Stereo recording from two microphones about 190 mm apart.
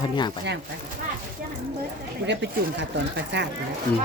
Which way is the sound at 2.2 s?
65° right (ahead or behind).